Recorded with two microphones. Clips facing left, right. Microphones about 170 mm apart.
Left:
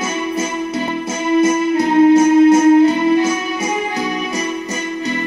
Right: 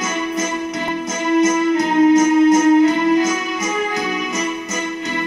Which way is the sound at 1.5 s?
30° left (ahead or behind).